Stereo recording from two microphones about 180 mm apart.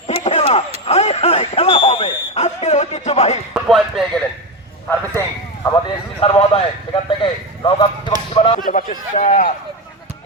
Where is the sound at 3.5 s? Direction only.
Centre (ahead or behind).